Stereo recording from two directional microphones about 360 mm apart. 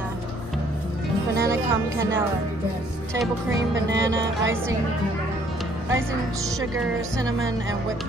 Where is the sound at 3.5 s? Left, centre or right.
Right.